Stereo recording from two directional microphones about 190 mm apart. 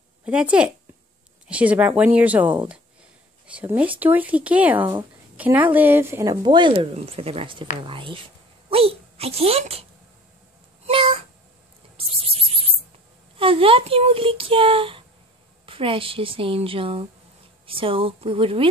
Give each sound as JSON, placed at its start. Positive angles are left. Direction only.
{"t": 0.2, "sound": "speech", "side_deg": -5}
{"t": 3.5, "sound": "a woman's voice", "side_deg": -5}
{"t": 10.9, "sound": "a sound", "side_deg": -25}
{"t": 13.4, "sound": "speech", "side_deg": -30}